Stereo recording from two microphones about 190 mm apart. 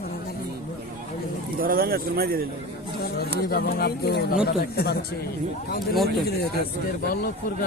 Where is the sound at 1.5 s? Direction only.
50° right (ahead or behind).